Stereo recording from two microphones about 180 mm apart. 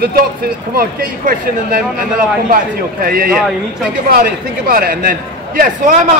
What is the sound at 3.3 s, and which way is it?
Speech, centre (ahead or behind).